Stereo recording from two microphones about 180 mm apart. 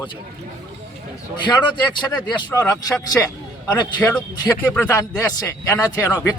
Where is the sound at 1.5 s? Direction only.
25° left (ahead or behind).